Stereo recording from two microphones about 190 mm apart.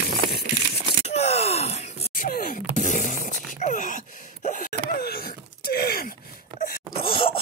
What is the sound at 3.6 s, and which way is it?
Wail, 40° left (ahead or behind).